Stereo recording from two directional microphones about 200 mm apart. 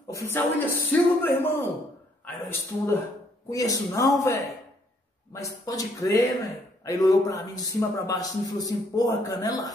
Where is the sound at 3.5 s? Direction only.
15° left (ahead or behind).